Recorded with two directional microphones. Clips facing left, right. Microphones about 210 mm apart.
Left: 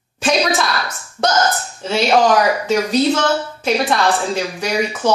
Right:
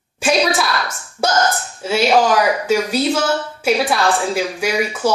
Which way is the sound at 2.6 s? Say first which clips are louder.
Left 1 dB; 5° right (ahead or behind).